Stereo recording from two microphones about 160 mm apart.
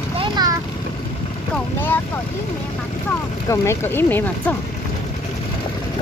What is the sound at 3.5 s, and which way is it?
Speech, 15° left (ahead or behind).